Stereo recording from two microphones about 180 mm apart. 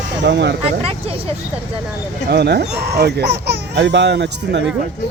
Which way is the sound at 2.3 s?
65° right (ahead or behind).